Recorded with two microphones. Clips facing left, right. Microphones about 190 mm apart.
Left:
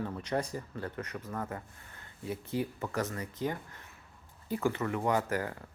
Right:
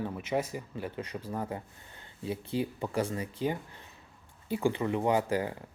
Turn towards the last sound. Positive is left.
turn(degrees=-15)  # may be behind; listen again after turning